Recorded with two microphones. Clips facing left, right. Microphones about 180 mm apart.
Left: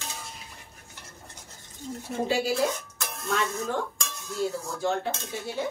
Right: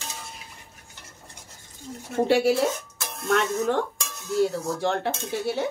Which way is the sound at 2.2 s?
70° right (ahead or behind).